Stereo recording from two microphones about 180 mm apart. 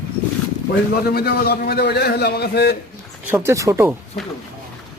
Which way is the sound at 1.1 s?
60° left (ahead or behind).